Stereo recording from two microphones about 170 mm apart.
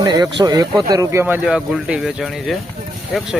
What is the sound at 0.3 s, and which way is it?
Speech, 20° right (ahead or behind).